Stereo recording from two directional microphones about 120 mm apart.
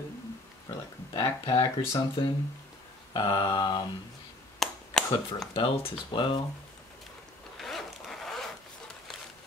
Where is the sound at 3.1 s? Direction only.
45° left (ahead or behind).